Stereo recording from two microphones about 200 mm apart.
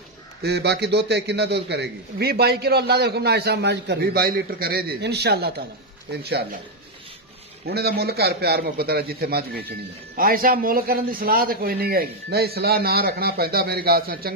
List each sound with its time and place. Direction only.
0.4 s a man's voice: 55° right (ahead or behind)
7.6 s a man's voice: 50° right (ahead or behind)